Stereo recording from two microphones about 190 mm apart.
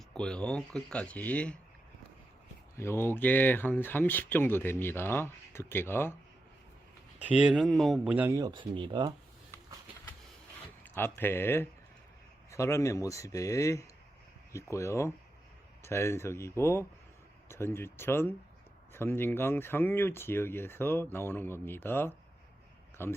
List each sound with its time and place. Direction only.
0.1 s speech: 5° left (ahead or behind)
2.7 s speech: 15° left (ahead or behind)
7.2 s speech: 5° right (ahead or behind); by 9.1 s 25° right (ahead or behind)
10.8 s speech: 10° left (ahead or behind)